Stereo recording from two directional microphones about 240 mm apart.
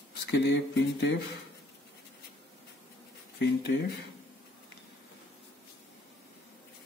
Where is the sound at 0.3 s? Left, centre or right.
Left.